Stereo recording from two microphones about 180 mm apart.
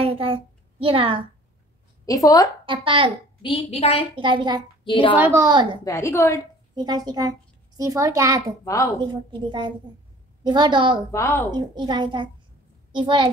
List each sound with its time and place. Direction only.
0.0 s a sound: 30° right (ahead or behind)
2.0 s a woman's voice: 20° left (ahead or behind)
2.6 s a woman's voice: 30° right (ahead or behind)
3.4 s a woman's voice: 30° left (ahead or behind)
4.1 s a woman's voice: 25° right (ahead or behind)
4.8 s a woman's voice: 25° left (ahead or behind)
5.2 s a woman's voice: 15° right (ahead or behind)
5.9 s a woman's voice: 15° left (ahead or behind)
6.7 s a child's voice: 20° right (ahead or behind)
11.1 s a woman's voice: 15° left (ahead or behind)
11.5 s a woman's voice: 25° right (ahead or behind)